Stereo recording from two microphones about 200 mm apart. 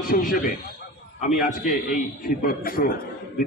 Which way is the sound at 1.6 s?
40° left (ahead or behind).